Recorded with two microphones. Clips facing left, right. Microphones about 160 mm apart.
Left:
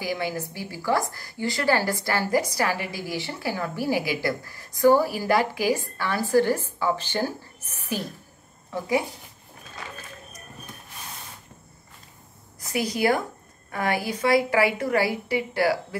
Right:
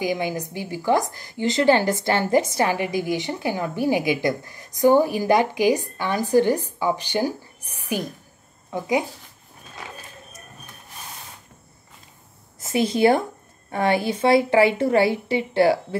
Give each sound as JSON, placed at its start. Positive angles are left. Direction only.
{"t": 0.0, "sound": "a woman's voice", "side_deg": -20}
{"t": 12.5, "sound": "a woman's voice", "side_deg": -25}